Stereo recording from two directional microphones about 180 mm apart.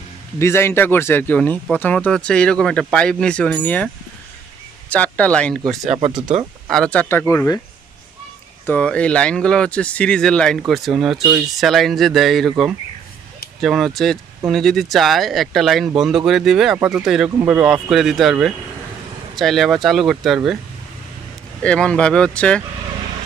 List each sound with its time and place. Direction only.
0.4 s speech: 15° left (ahead or behind)
5.9 s speech: 35° right (ahead or behind)
6.7 s speech: 5° left (ahead or behind)
8.6 s speech: 5° left (ahead or behind)
21.6 s speech: 5° left (ahead or behind)